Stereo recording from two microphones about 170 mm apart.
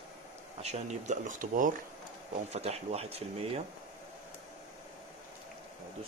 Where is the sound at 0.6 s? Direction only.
40° right (ahead or behind).